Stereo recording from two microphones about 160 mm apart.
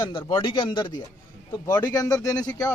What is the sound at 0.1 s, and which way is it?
Speech, 30° left (ahead or behind).